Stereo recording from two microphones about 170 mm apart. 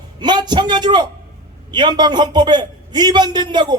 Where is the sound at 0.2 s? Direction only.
25° right (ahead or behind).